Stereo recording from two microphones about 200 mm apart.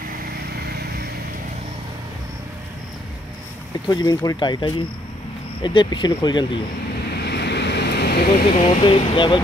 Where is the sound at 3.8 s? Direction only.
20° left (ahead or behind).